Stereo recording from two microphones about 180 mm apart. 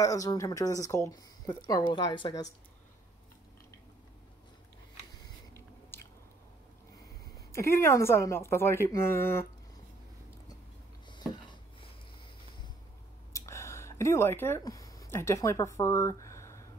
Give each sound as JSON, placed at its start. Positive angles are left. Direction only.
{"t": 0.0, "sound": "speech", "side_deg": 20}
{"t": 5.9, "sound": "biting", "side_deg": 10}
{"t": 7.5, "sound": "a woman's voice", "side_deg": 15}
{"t": 13.3, "sound": "a sound", "side_deg": 15}